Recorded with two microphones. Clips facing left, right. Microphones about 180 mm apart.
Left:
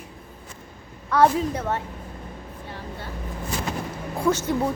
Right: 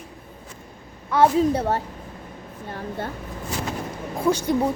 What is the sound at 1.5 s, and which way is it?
Speech, 35° right (ahead or behind).